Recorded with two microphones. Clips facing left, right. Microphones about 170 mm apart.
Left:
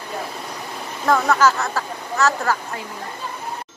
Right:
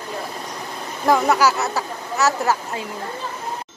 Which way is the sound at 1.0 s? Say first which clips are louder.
Even; 15° right (ahead or behind).